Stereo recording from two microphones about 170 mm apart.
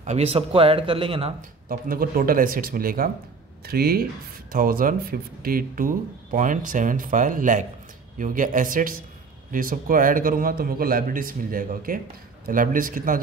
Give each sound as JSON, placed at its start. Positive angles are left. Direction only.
{"t": 0.0, "sound": "speech", "side_deg": -40}
{"t": 1.7, "sound": "speech", "side_deg": -60}